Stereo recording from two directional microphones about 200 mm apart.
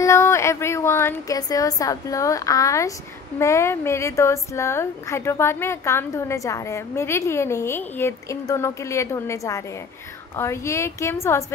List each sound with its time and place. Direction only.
0.0 s a woman's voice: 15° left (ahead or behind)